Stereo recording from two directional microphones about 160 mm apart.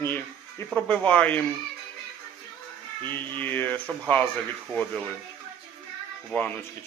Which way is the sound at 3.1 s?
10° left (ahead or behind).